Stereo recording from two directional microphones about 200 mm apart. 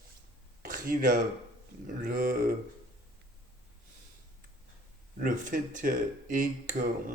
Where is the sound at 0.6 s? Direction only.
45° right (ahead or behind).